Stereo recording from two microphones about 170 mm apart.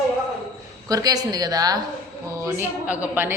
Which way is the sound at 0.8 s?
20° right (ahead or behind).